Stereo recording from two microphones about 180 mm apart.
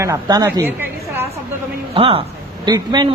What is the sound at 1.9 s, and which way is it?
A man's voice, 30° right (ahead or behind).